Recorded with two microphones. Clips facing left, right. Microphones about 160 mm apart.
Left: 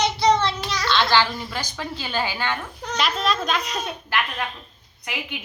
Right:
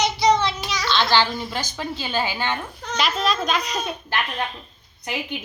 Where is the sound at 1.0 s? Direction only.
15° right (ahead or behind).